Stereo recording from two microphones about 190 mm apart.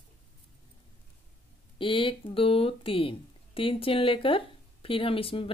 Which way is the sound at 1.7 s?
25° left (ahead or behind).